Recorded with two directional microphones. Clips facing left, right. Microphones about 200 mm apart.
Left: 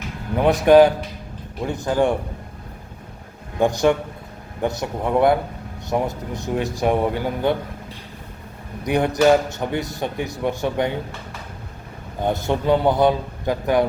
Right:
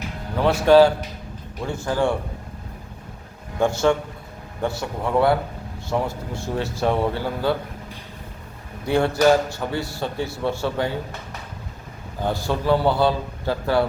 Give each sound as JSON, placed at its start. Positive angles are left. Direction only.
{"t": 0.3, "sound": "a man's voice", "side_deg": 15}
{"t": 3.6, "sound": "a man's voice", "side_deg": 15}
{"t": 8.8, "sound": "a man's voice", "side_deg": 15}
{"t": 12.2, "sound": "a man's voice", "side_deg": 20}